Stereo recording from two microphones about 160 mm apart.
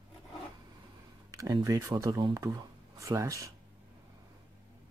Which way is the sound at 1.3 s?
20° right (ahead or behind).